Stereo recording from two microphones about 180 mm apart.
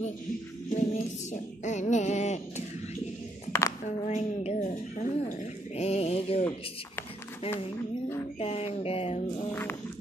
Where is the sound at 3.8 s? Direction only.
40° left (ahead or behind).